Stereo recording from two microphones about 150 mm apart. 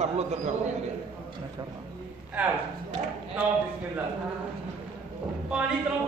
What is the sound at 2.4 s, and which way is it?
Speech, 10° right (ahead or behind).